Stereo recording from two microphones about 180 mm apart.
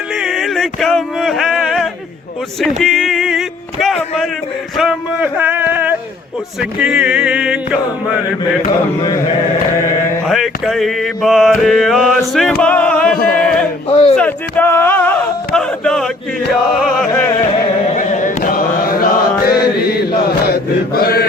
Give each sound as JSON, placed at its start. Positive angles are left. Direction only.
{"t": 0.2, "sound": "a sound", "side_deg": 0}
{"t": 2.8, "sound": "music", "side_deg": 0}
{"t": 4.8, "sound": "a sound", "side_deg": -5}
{"t": 6.6, "sound": "mantra", "side_deg": -5}
{"t": 10.2, "sound": "mantra", "side_deg": 0}
{"t": 12.6, "sound": "music", "side_deg": 5}
{"t": 13.3, "sound": "chant", "side_deg": 5}
{"t": 13.8, "sound": "a sound", "side_deg": 30}
{"t": 14.2, "sound": "a sound", "side_deg": 10}
{"t": 16.7, "sound": "mantra", "side_deg": 0}
{"t": 17.9, "sound": "chant", "side_deg": 45}
{"t": 20.5, "sound": "mantra", "side_deg": 60}